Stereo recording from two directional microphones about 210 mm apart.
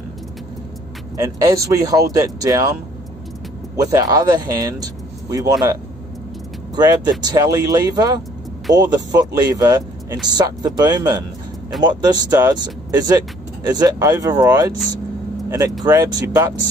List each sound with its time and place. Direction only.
1.2 s speech: 15° right (ahead or behind)
15.8 s speech: 15° right (ahead or behind)